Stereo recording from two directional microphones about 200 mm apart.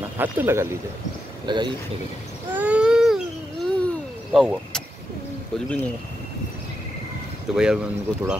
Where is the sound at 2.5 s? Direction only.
5° right (ahead or behind).